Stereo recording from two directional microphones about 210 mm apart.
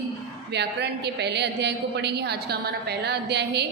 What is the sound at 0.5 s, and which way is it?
A woman's voice, 55° right (ahead or behind).